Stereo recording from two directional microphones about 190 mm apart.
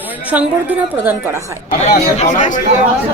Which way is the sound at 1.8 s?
40° left (ahead or behind).